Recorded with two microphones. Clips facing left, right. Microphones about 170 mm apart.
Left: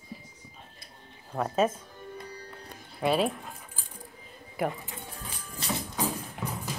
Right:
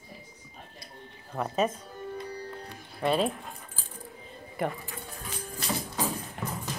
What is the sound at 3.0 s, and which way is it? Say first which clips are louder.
Speech: even; 5° left (ahead or behind).